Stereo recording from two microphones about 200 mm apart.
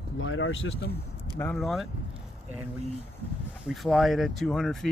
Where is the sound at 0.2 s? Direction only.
75° left (ahead or behind).